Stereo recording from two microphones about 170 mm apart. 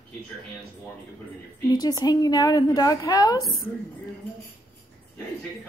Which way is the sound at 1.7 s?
20° left (ahead or behind).